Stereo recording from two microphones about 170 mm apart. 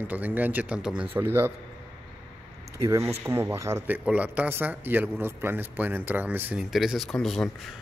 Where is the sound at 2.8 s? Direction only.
15° right (ahead or behind).